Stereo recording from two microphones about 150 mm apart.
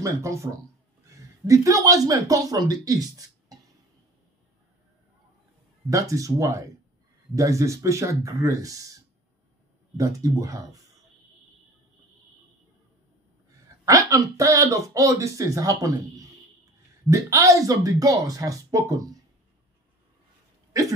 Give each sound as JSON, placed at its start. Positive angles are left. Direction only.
{"t": 0.0, "sound": "speech", "side_deg": -20}
{"t": 5.9, "sound": "speech", "side_deg": -20}
{"t": 9.9, "sound": "speech", "side_deg": -20}
{"t": 13.7, "sound": "speech", "side_deg": -20}